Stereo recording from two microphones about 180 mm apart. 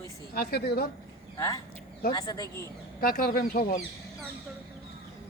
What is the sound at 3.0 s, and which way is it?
Speech, 55° left (ahead or behind).